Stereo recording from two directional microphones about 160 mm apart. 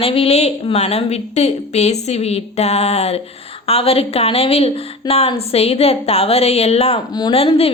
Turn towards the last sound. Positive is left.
turn(degrees=35)  # may be behind; listen again after turning